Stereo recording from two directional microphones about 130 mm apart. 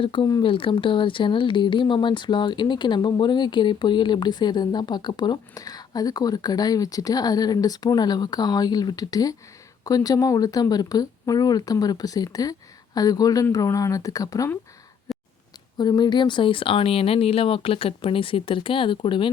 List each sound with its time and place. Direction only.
0.0 s speech: 40° left (ahead or behind)
15.1 s a sound: centre (ahead or behind)
15.8 s speech: 35° left (ahead or behind)